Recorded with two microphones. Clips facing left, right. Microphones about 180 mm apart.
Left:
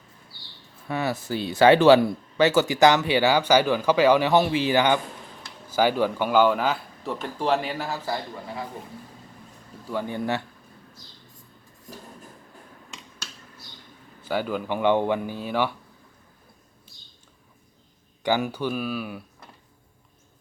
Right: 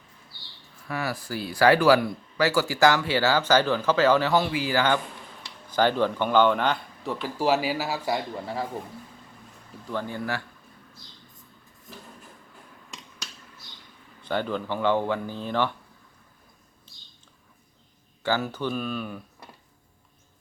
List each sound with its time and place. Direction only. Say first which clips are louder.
0.9 s speech: left 4 dB; 25° left (ahead or behind); by 8.2 s 10° right (ahead or behind)
9.8 s speech: left 3 dB; 10° left (ahead or behind)
14.2 s speech: left 1 dB; 5° left (ahead or behind)
18.2 s speech: left 2 dB; 15° left (ahead or behind)